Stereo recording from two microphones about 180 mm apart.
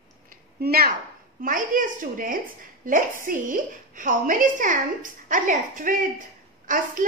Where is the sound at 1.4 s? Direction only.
50° right (ahead or behind).